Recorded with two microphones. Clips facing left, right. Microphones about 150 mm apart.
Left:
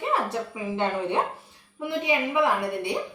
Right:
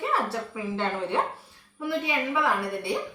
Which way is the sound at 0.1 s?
15° left (ahead or behind).